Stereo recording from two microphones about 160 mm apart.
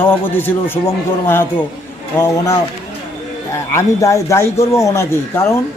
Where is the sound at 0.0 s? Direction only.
15° left (ahead or behind).